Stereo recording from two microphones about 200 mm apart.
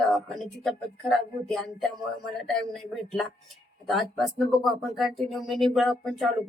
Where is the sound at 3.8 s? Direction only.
Centre (ahead or behind).